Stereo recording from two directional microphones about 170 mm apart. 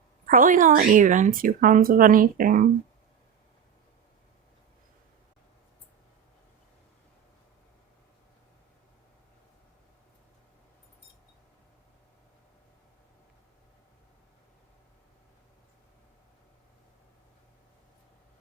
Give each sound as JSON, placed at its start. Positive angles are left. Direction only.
{"t": 0.3, "sound": "a woman's voice", "side_deg": -55}